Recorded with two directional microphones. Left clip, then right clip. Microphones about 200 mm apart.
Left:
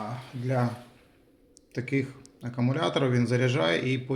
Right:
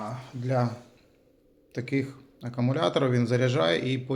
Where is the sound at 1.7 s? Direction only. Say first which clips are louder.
Even; 5° left (ahead or behind).